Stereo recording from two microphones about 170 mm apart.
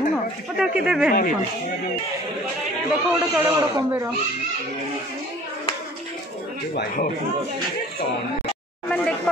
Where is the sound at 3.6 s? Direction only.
20° right (ahead or behind).